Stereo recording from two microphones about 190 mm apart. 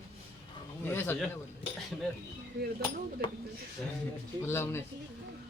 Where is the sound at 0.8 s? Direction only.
10° left (ahead or behind).